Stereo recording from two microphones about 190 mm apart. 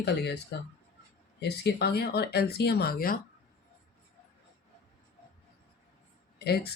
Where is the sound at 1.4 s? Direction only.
60° left (ahead or behind).